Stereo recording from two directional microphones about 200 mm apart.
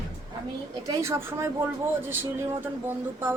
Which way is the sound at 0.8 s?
15° right (ahead or behind).